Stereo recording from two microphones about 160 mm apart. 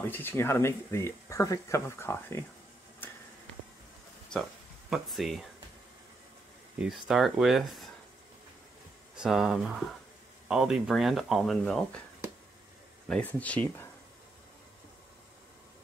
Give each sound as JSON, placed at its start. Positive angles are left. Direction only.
{"t": 0.1, "sound": "speech", "side_deg": 15}
{"t": 4.3, "sound": "speech", "side_deg": 0}
{"t": 6.8, "sound": "speech", "side_deg": 0}
{"t": 9.1, "sound": "speech", "side_deg": -5}
{"t": 13.1, "sound": "speech", "side_deg": 10}